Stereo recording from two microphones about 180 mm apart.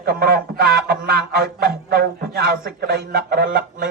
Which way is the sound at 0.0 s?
60° right (ahead or behind).